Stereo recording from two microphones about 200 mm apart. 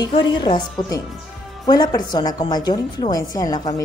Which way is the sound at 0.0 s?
25° left (ahead or behind).